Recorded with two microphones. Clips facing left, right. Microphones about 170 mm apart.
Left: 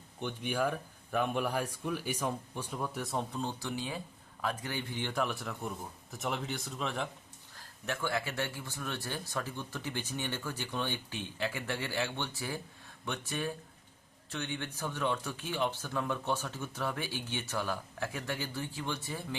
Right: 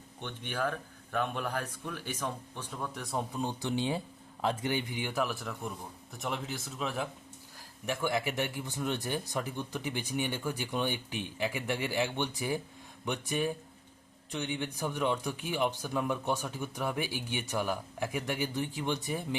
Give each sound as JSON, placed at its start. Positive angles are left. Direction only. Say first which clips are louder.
{"t": 0.2, "sound": "speech", "louder": "left 2 dB", "side_deg": 10}
{"t": 3.3, "sound": "speech", "louder": "right 4 dB", "side_deg": -20}
{"t": 7.9, "sound": "speech", "louder": "right 3 dB", "side_deg": -15}